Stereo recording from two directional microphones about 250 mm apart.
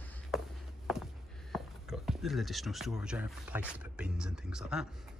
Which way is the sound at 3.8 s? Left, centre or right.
Centre.